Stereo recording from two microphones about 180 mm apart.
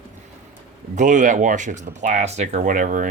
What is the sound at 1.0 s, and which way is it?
Speech, 45° right (ahead or behind).